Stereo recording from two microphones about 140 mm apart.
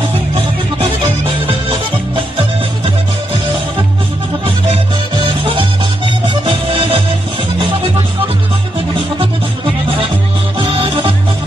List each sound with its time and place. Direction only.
1.5 s music: 40° right (ahead or behind)
5.2 s music: 40° right (ahead or behind)
10.6 s music: 40° right (ahead or behind)